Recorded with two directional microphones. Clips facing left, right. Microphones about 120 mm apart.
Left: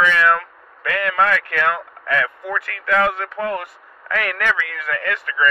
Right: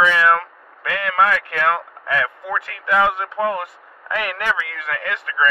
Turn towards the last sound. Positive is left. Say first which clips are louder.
# left 1 dB
turn(degrees=-20)  # may be behind; listen again after turning